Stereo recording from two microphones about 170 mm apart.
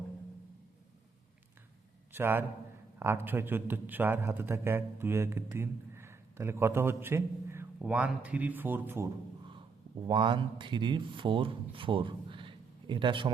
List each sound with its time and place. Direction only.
2.1 s a man's voice: 15° right (ahead or behind)
10.1 s speech: 30° right (ahead or behind)